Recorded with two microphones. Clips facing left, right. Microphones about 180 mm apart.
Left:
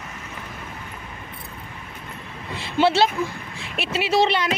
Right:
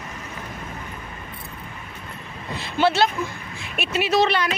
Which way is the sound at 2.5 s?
25° left (ahead or behind).